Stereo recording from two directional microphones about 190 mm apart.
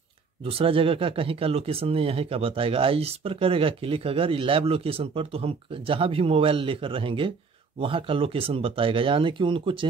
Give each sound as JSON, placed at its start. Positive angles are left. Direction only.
{"t": 0.4, "sound": "speech", "side_deg": -30}